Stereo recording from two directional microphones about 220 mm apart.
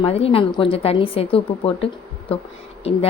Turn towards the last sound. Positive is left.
turn(degrees=25)  # may be behind; listen again after turning